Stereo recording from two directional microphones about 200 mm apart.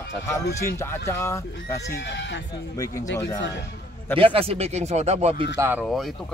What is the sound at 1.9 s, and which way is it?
Speech, 60° left (ahead or behind).